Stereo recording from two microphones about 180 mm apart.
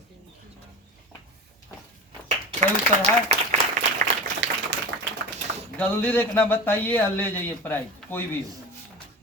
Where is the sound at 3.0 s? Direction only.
40° right (ahead or behind).